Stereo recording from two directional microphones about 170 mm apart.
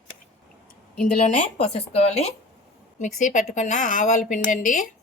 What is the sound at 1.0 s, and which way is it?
Speech, 45° left (ahead or behind).